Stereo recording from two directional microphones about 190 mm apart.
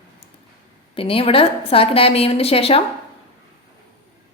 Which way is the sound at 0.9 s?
30° left (ahead or behind).